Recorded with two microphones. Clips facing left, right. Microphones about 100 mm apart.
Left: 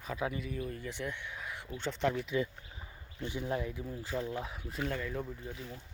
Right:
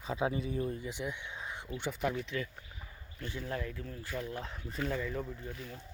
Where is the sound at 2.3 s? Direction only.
25° left (ahead or behind); by 5.7 s centre (ahead or behind).